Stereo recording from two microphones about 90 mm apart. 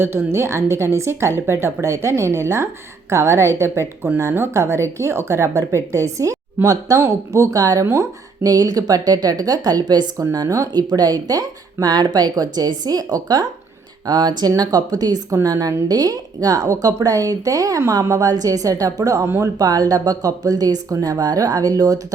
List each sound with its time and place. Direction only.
0.0 s speech: 25° right (ahead or behind); by 10.2 s 50° right (ahead or behind)
10.3 s speech: 40° right (ahead or behind)